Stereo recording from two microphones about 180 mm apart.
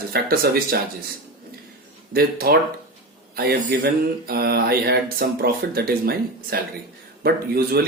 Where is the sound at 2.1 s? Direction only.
55° right (ahead or behind).